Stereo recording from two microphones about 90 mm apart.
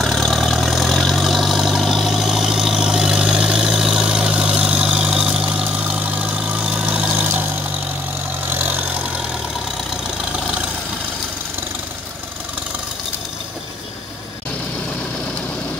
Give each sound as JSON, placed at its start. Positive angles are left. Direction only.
{"t": 0.0, "sound": "vehicle", "side_deg": 5}
{"t": 8.5, "sound": "vehicle", "side_deg": -20}